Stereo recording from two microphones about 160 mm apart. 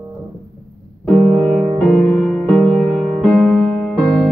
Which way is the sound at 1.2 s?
25° right (ahead or behind).